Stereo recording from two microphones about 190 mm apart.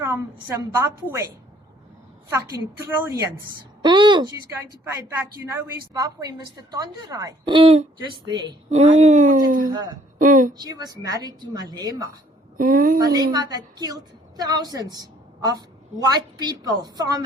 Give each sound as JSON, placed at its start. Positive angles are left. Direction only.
{"t": 0.0, "sound": "a sound", "side_deg": -10}
{"t": 0.4, "sound": "a woman's voice", "side_deg": -15}
{"t": 2.3, "sound": "a woman's voice", "side_deg": -15}
{"t": 5.9, "sound": "a woman's voice", "side_deg": -20}
{"t": 9.0, "sound": "speech", "side_deg": -40}
{"t": 10.6, "sound": "a woman's voice", "side_deg": -20}
{"t": 12.5, "sound": "speech", "side_deg": -50}
{"t": 13.0, "sound": "a woman's voice", "side_deg": -20}